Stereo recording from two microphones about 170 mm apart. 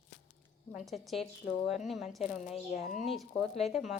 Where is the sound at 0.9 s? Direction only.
Centre (ahead or behind).